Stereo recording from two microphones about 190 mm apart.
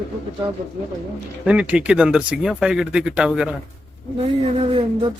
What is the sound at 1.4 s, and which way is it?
Speech, 5° right (ahead or behind).